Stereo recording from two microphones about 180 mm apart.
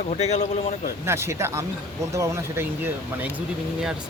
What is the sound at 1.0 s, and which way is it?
Speech, 15° right (ahead or behind).